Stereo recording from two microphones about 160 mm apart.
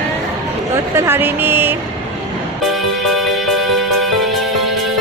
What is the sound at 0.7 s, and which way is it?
Speech, 20° right (ahead or behind).